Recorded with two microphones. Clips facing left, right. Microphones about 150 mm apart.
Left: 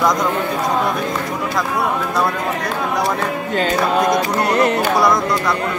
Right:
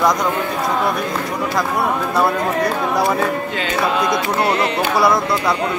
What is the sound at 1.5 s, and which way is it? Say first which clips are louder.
Speech: right 1 dB; 5° right (ahead or behind).